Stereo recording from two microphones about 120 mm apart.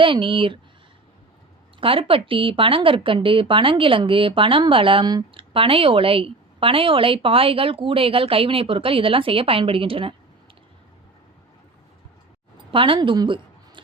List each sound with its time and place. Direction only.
0.0 s speech: 45° right (ahead or behind)
1.8 s speech: 50° right (ahead or behind)
12.7 s a woman's voice: 45° right (ahead or behind)